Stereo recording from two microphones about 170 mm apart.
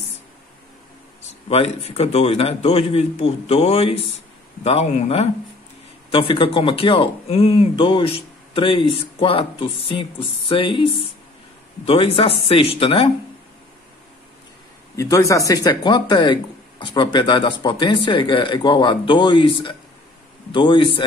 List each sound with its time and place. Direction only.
1.5 s speech: 35° left (ahead or behind)
15.0 s speech: 20° left (ahead or behind)